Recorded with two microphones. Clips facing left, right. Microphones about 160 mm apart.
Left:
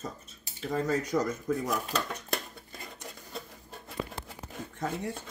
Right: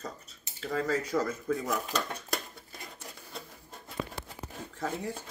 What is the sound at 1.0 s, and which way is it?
Speech, 15° left (ahead or behind).